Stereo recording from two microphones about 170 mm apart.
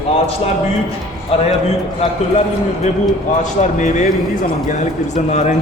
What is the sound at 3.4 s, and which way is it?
Music, 45° left (ahead or behind).